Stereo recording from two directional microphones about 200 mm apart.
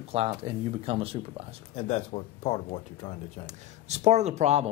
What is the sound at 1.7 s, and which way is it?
Speech, 30° left (ahead or behind).